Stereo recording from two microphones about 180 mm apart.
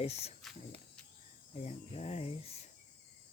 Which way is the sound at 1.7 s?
35° left (ahead or behind).